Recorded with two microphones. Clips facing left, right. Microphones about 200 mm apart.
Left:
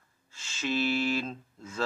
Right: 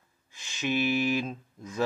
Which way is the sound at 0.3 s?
15° right (ahead or behind).